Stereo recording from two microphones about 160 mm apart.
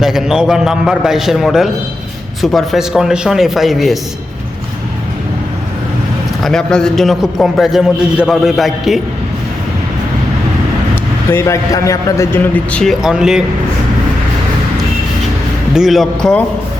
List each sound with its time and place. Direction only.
0.0 s a man's voice: centre (ahead or behind)
6.4 s a man's voice: 5° left (ahead or behind)
11.3 s a man's voice: 20° left (ahead or behind)
12.7 s a man's voice: centre (ahead or behind)
15.7 s a man's voice: centre (ahead or behind)